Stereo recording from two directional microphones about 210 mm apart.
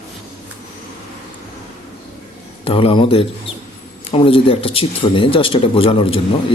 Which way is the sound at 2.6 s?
25° left (ahead or behind).